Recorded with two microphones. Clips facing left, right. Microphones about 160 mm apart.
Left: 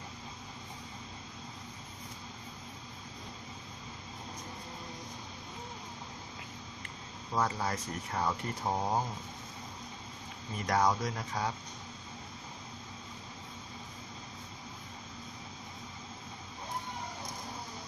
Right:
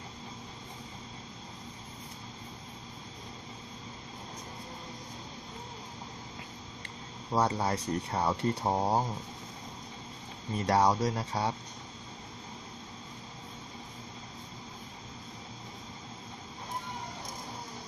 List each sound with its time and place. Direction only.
7.3 s speech: 30° right (ahead or behind)
10.7 s speech: 35° right (ahead or behind)